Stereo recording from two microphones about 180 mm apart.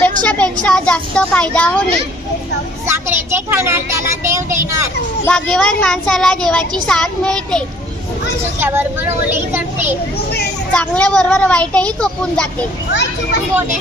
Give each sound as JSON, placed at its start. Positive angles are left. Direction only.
{"t": 0.2, "sound": "speech", "side_deg": 5}
{"t": 2.8, "sound": "a child's voice", "side_deg": -15}
{"t": 5.2, "sound": "speech", "side_deg": 5}
{"t": 8.6, "sound": "a child's voice", "side_deg": -10}
{"t": 10.2, "sound": "a child's voice", "side_deg": 60}
{"t": 10.7, "sound": "speech", "side_deg": 5}
{"t": 12.9, "sound": "a child's voice", "side_deg": 80}